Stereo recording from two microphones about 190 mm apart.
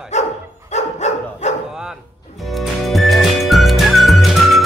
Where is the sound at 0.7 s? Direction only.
35° left (ahead or behind).